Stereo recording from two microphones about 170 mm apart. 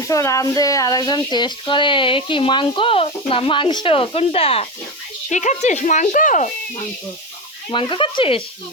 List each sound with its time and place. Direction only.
0.1 s speech: 20° left (ahead or behind); by 4.7 s 35° left (ahead or behind)
5.3 s speech: 45° left (ahead or behind)
7.7 s speech: 30° left (ahead or behind)